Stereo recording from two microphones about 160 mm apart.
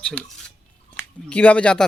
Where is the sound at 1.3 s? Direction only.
10° left (ahead or behind).